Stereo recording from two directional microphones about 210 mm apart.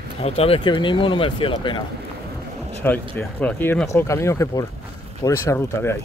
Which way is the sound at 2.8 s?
10° left (ahead or behind).